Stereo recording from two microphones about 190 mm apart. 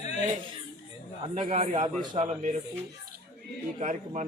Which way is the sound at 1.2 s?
35° right (ahead or behind).